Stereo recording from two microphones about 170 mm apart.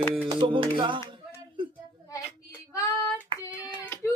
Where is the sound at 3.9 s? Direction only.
15° left (ahead or behind).